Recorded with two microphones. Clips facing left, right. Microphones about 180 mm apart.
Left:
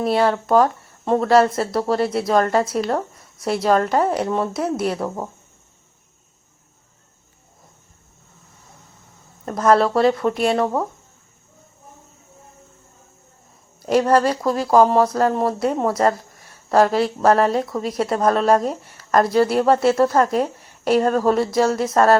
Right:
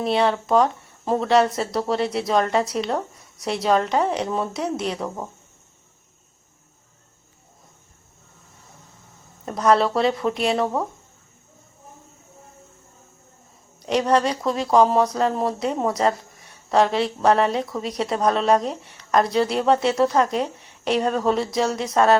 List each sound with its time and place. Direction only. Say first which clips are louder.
0.0 s speech: left 2 dB; centre (ahead or behind)
9.5 s speech: left 2 dB; centre (ahead or behind)
13.8 s speech: left 3 dB; 5° left (ahead or behind)